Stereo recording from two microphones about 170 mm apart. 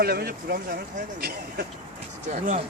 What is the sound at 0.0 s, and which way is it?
Speech, 65° right (ahead or behind).